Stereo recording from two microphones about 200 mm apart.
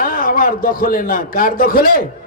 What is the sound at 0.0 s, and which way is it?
A man's voice, 45° left (ahead or behind).